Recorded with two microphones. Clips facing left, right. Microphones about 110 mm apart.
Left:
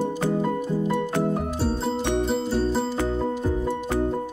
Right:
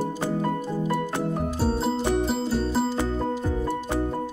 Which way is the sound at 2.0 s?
Centre (ahead or behind).